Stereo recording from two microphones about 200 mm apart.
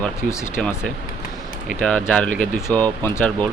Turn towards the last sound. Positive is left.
turn(degrees=5)  # may be behind; listen again after turning